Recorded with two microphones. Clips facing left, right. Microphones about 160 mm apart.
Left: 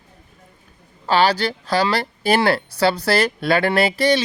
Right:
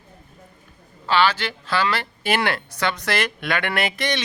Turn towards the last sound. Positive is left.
turn(degrees=35)  # may be behind; listen again after turning